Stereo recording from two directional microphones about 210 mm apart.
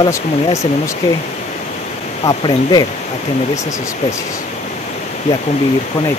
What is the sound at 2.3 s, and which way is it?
Speech, 20° left (ahead or behind).